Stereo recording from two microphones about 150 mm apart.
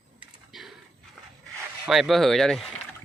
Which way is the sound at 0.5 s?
Centre (ahead or behind).